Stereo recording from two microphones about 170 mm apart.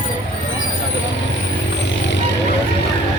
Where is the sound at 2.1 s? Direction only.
90° left.